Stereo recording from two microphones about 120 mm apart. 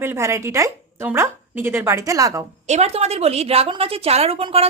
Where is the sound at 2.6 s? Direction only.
65° right (ahead or behind).